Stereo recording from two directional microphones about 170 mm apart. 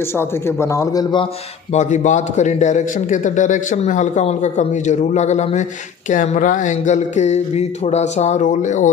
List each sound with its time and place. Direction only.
0.2 s a man's voice: 15° left (ahead or behind)
1.7 s a man's voice: 45° left (ahead or behind)